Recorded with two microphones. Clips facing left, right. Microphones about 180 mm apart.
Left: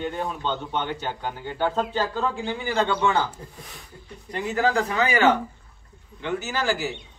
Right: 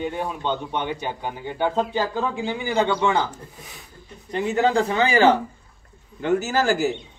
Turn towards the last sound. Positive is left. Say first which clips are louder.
# right 5 dB
turn(degrees=-45)  # may be behind; listen again after turning